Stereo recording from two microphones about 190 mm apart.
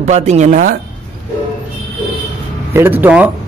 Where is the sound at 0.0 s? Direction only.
35° right (ahead or behind).